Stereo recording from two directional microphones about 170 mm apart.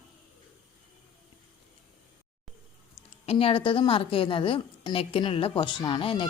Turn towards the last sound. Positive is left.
turn(degrees=30)  # may be behind; listen again after turning